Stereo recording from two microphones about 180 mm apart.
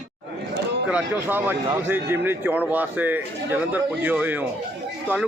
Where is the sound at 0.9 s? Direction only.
10° right (ahead or behind).